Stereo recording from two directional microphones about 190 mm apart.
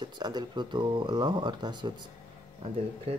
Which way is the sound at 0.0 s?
20° right (ahead or behind).